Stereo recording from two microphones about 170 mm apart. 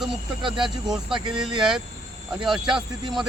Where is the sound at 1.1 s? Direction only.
5° right (ahead or behind).